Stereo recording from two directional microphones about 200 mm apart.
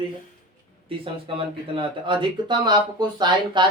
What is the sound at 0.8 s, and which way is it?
Speech, 25° right (ahead or behind).